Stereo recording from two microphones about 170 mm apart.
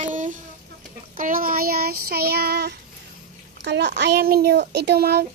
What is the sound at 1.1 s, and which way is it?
Child singing, 55° right (ahead or behind).